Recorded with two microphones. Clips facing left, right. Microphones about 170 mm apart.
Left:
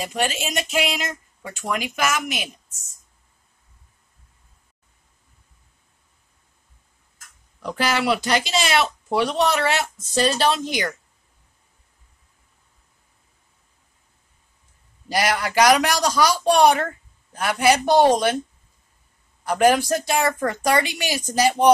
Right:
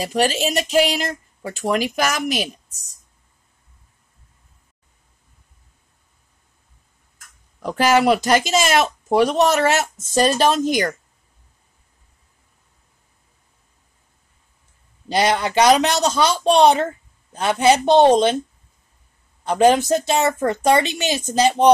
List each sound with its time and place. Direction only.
0.0 s speech: 35° right (ahead or behind)
7.6 s speech: 45° right (ahead or behind)
15.0 s a man's voice: 25° right (ahead or behind)
19.4 s a man's voice: 25° right (ahead or behind)